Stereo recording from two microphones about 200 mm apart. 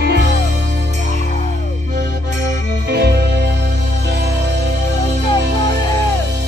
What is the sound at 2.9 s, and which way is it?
Music, 55° right (ahead or behind).